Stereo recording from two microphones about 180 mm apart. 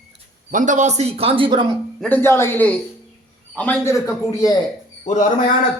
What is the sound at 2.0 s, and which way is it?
A man's voice, 10° left (ahead or behind).